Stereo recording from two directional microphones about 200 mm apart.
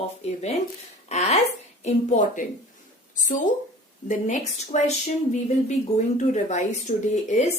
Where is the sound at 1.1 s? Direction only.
35° left (ahead or behind).